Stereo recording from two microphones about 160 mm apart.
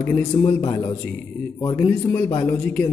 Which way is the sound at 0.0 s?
10° left (ahead or behind).